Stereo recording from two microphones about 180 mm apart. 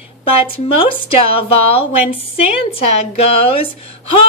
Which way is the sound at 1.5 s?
30° left (ahead or behind).